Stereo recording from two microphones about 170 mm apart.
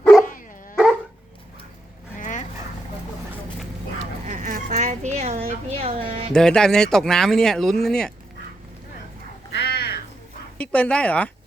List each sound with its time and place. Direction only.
2.1 s dog: 50° left (ahead or behind)
4.3 s speech: 50° right (ahead or behind)
6.3 s speech: 5° left (ahead or behind)
9.6 s crow: 75° left (ahead or behind)
10.6 s speech: 10° left (ahead or behind)